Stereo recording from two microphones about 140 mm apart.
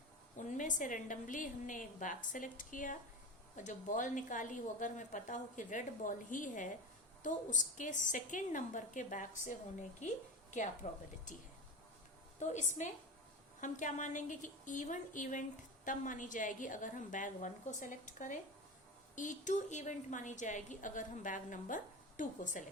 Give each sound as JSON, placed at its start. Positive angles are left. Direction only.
{"t": 0.3, "sound": "a woman's voice", "side_deg": 60}
{"t": 10.8, "sound": "a woman's voice", "side_deg": 50}
{"t": 12.4, "sound": "speech", "side_deg": 60}